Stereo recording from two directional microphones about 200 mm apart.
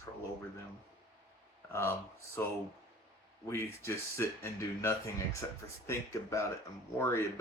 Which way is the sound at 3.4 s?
10° left (ahead or behind).